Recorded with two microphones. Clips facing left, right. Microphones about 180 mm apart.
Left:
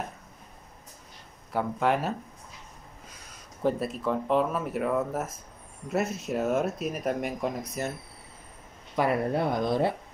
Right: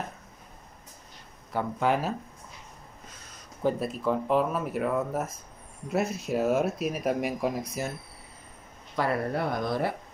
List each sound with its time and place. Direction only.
1.5 s speech: centre (ahead or behind)
3.6 s speech: centre (ahead or behind)
8.9 s speech: 20° left (ahead or behind)